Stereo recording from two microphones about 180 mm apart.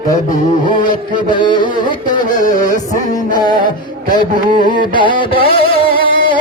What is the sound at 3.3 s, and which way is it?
Music, 25° left (ahead or behind).